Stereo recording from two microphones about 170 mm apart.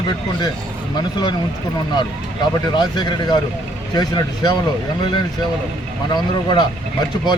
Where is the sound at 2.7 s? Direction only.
25° left (ahead or behind).